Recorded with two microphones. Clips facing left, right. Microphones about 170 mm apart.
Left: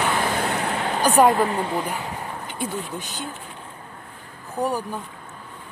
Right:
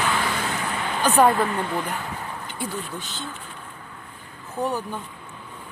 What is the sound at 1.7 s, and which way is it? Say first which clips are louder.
Speech: left 1 dB; 10° left (ahead or behind).